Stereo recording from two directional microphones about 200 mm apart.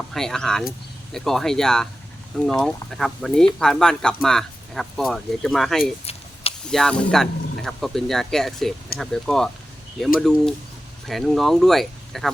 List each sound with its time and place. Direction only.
0.1 s speech: centre (ahead or behind)
6.1 s a sound: 30° left (ahead or behind)
6.7 s speech: 5° left (ahead or behind)